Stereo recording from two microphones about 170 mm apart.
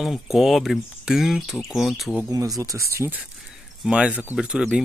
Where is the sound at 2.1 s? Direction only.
20° right (ahead or behind).